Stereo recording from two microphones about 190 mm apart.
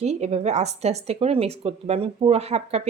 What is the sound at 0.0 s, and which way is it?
A woman's voice, 35° right (ahead or behind).